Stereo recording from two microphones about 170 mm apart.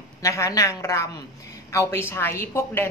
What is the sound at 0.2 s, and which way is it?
Speech, 20° left (ahead or behind).